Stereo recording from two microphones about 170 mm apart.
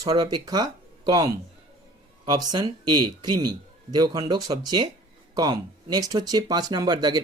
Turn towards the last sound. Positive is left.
turn(degrees=-25)  # may be behind; listen again after turning